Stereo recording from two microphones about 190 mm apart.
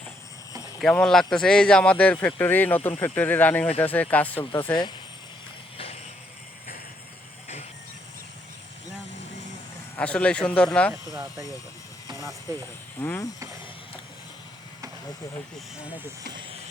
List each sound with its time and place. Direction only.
0.8 s speech: 5° left (ahead or behind)
4.7 s speech: 25° left (ahead or behind)
5.7 s vehicle: 30° left (ahead or behind)
10.0 s speech: 5° left (ahead or behind)
10.9 s speech: 15° right (ahead or behind)
13.0 s speech: 10° left (ahead or behind)